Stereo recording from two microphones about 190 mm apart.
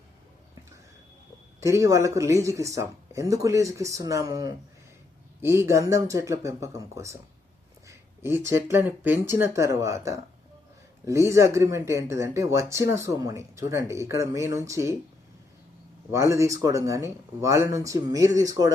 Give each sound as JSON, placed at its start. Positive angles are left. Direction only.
{"t": 1.6, "sound": "speech", "side_deg": -15}
{"t": 16.1, "sound": "speech", "side_deg": -15}